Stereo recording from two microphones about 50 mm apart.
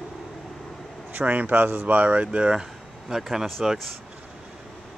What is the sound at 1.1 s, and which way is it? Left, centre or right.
Speech, right.